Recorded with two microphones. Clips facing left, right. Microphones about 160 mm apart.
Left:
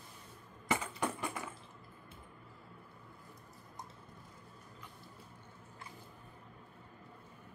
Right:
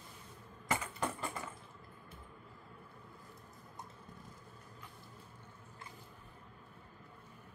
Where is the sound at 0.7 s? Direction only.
20° left (ahead or behind).